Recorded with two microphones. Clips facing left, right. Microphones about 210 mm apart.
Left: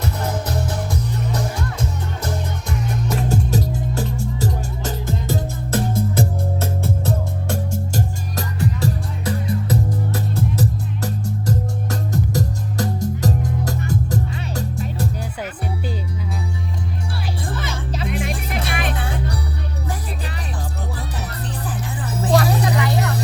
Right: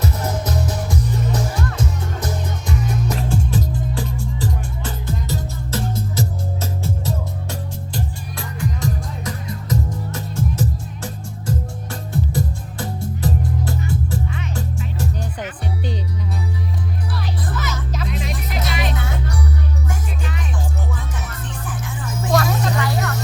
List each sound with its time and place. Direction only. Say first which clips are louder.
3.2 s music: left 1 dB; 40° left (ahead or behind)
7.5 s music: left 7 dB; 45° left (ahead or behind)
17.5 s music: even; 30° left (ahead or behind)
18.7 s music: even; 50° left (ahead or behind)
18.9 s music: left 1 dB; 30° left (ahead or behind)
21.7 s music: even; 35° left (ahead or behind)
22.6 s vehicle: left 2 dB; 20° left (ahead or behind)